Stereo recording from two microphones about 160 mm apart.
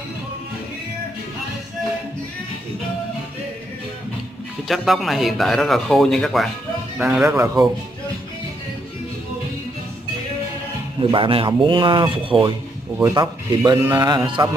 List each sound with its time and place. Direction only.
4.6 s speech: centre (ahead or behind)
7.3 s a man's voice: 20° right (ahead or behind)
11.0 s speech: 30° right (ahead or behind)
13.0 s a man's voice: 20° right (ahead or behind)